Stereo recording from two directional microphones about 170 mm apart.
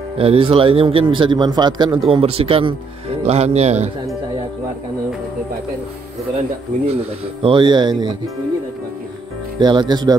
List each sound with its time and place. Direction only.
0.2 s a man's voice: 35° right (ahead or behind)
6.9 s a man's voice: 35° right (ahead or behind)
9.6 s a man's voice: 25° right (ahead or behind)